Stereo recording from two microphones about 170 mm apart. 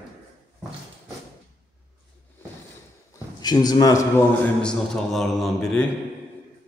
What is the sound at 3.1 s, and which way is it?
A man's voice, 25° left (ahead or behind).